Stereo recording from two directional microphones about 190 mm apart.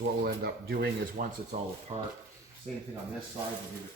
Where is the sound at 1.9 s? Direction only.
30° right (ahead or behind).